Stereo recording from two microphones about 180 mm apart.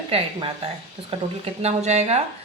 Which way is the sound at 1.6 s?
35° right (ahead or behind).